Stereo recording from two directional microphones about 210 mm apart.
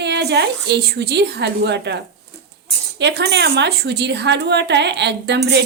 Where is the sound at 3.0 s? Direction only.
55° right (ahead or behind).